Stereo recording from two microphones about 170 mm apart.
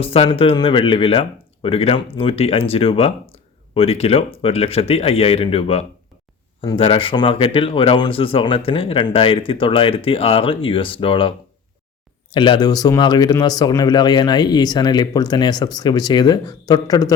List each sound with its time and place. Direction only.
0.0 s speech: 35° left (ahead or behind)